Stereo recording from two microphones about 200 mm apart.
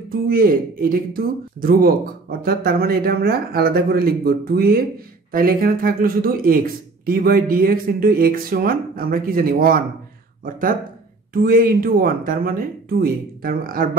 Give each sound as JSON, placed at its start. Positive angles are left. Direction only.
{"t": 0.3, "sound": "speech", "side_deg": -45}